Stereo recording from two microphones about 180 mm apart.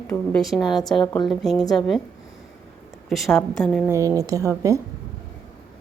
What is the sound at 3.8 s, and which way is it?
Speech, 15° right (ahead or behind).